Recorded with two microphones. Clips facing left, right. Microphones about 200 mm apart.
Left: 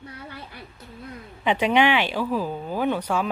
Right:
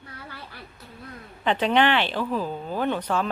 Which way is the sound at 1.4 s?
10° left (ahead or behind).